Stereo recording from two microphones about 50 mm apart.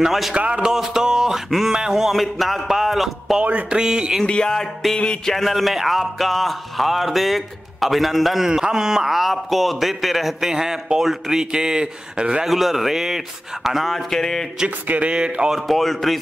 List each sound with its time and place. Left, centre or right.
0.0 s speech: centre
0.3 s speech: centre
3.4 s speech: right
3.8 s speech: centre
4.3 s music: centre
5.3 s speech: centre
8.5 s speech: centre
12.4 s speech: centre
14.9 s speech: right
15.5 s speech: centre